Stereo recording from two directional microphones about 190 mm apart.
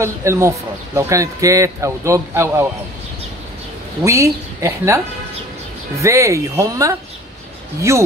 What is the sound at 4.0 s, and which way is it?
A man's voice, 15° right (ahead or behind).